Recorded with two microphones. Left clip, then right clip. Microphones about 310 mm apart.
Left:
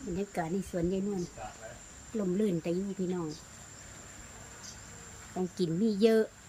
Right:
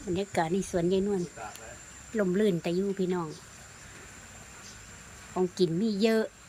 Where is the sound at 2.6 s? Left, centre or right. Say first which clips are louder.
Right 3 dB; centre.